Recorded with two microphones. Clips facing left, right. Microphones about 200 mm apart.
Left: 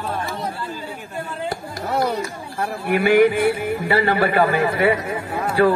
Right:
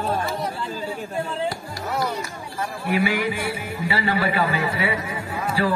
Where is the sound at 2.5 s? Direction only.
55° left (ahead or behind).